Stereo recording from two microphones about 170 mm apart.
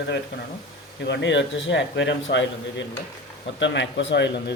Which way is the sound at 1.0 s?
90° left.